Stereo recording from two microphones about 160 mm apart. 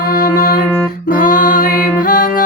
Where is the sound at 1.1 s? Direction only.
60° left (ahead or behind).